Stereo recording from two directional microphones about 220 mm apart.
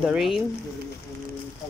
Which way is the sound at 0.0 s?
Centre (ahead or behind).